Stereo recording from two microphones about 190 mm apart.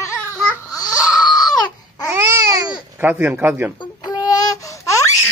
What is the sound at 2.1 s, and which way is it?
Babbling, 15° right (ahead or behind).